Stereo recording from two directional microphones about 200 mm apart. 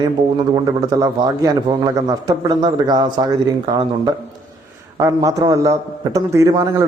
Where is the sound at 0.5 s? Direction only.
20° right (ahead or behind).